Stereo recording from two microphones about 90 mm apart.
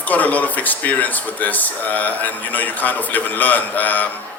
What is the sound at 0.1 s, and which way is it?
Speech, 20° left (ahead or behind).